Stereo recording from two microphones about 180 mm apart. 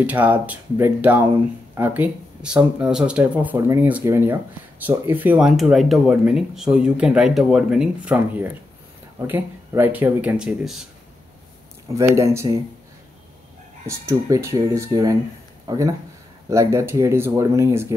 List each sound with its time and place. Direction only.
0.0 s speech: 10° right (ahead or behind)
11.9 s speech: 15° right (ahead or behind)
13.8 s speech: 15° right (ahead or behind)